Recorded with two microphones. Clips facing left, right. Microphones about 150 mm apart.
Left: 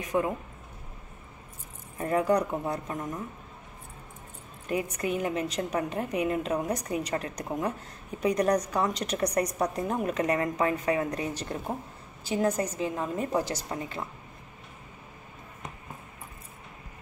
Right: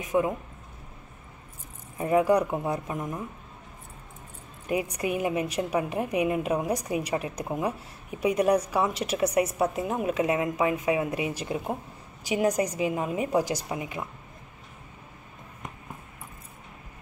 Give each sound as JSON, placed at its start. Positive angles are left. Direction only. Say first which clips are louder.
{"t": 0.0, "sound": "a woman's voice", "louder": "right 2 dB", "side_deg": -15}
{"t": 2.0, "sound": "a woman's voice", "louder": "right 3 dB", "side_deg": -10}
{"t": 4.6, "sound": "a woman's voice", "louder": "right 2 dB", "side_deg": -15}